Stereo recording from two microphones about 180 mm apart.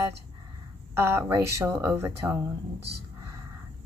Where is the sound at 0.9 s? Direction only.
15° right (ahead or behind).